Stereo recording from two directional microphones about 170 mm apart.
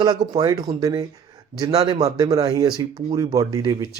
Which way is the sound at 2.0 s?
20° right (ahead or behind).